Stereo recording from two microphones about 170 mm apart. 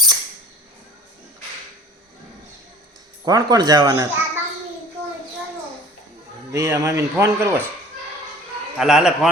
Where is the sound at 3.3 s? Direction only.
20° right (ahead or behind).